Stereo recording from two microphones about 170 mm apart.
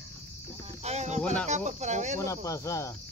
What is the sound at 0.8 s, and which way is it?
Speech, 40° right (ahead or behind).